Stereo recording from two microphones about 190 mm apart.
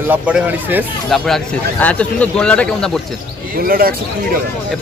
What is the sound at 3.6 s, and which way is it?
Speech, 50° right (ahead or behind).